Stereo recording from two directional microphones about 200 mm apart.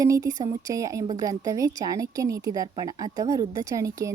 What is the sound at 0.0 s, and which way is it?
A woman's voice, 15° right (ahead or behind).